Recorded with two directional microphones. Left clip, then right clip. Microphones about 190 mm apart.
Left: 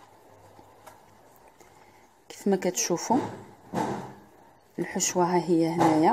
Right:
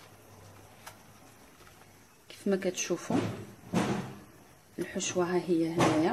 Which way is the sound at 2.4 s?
30° left (ahead or behind).